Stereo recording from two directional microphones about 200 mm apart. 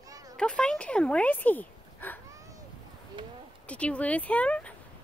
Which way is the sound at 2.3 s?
15° right (ahead or behind).